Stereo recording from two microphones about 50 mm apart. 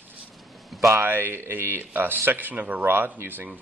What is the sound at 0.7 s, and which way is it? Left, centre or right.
Speech, right.